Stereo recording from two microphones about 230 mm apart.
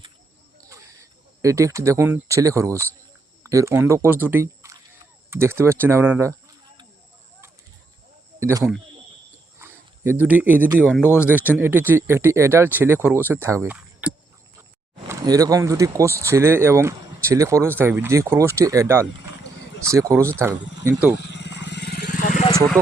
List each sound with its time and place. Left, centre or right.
1.4 s speech: centre
8.4 s speech: centre
11.3 s speech: centre
21.2 s vehicle: left